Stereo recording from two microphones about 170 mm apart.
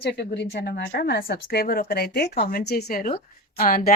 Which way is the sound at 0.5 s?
70° left (ahead or behind).